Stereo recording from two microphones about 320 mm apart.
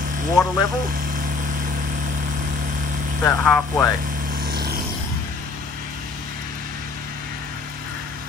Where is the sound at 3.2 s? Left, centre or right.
Centre.